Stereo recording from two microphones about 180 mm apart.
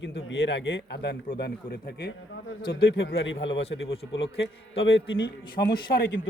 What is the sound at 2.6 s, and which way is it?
Speech, 25° left (ahead or behind).